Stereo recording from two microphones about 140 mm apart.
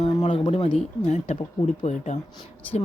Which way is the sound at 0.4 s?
45° left (ahead or behind).